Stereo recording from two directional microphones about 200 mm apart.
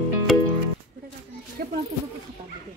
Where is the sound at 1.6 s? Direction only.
45° right (ahead or behind).